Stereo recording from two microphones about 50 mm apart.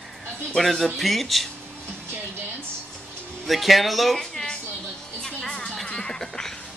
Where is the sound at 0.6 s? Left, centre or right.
Centre.